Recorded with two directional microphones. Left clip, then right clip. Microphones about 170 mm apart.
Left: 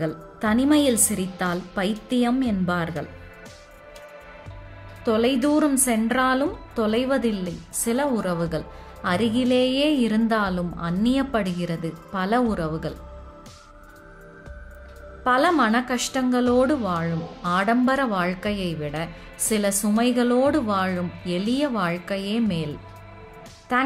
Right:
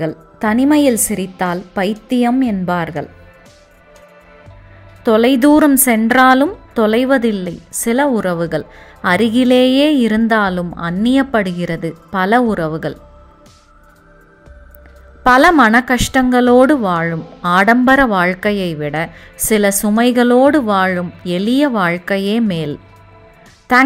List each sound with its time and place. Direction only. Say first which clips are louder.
0.0 s a woman's voice: right 8 dB; 35° right (ahead or behind)
5.0 s a woman's voice: right 10 dB; 40° right (ahead or behind)
15.2 s a woman's voice: right 11 dB; 45° right (ahead or behind)